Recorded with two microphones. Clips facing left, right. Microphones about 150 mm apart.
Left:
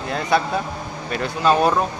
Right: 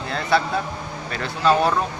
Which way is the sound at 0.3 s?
15° left (ahead or behind).